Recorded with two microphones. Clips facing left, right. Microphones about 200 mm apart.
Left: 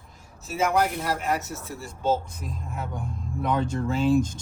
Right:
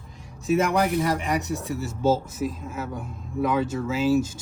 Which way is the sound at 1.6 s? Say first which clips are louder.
Right 5 dB; centre (ahead or behind).